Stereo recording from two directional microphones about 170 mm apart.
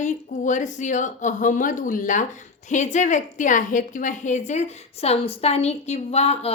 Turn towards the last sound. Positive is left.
turn(degrees=40)  # may be behind; listen again after turning